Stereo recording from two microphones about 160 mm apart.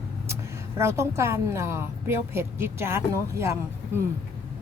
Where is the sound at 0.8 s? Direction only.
15° right (ahead or behind).